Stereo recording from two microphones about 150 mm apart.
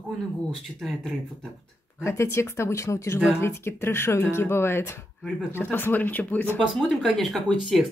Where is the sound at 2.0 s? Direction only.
20° left (ahead or behind).